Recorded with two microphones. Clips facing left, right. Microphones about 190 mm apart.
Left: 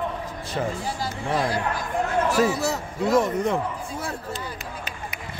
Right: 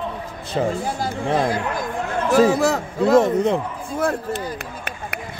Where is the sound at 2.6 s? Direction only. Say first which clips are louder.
Right 6 dB; 90° right.